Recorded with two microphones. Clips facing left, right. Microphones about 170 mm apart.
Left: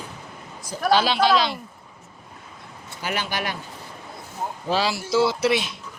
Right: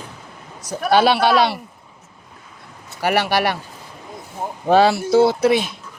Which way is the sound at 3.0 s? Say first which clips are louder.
Right 10 dB; 70° right (ahead or behind).